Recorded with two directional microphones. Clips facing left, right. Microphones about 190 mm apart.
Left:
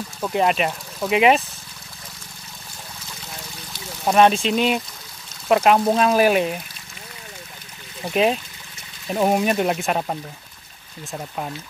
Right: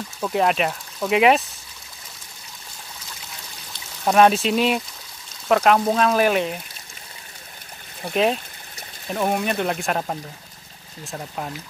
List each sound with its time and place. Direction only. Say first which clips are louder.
0.2 s speech: even; centre (ahead or behind)
4.0 s speech: even; centre (ahead or behind)
8.1 s speech: left 1 dB; 5° left (ahead or behind)
9.1 s speech: left 4 dB; 20° left (ahead or behind)
9.8 s speech: left 1 dB; 5° left (ahead or behind)